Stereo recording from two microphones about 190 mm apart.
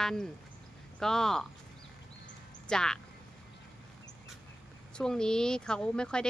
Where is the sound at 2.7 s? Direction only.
5° left (ahead or behind).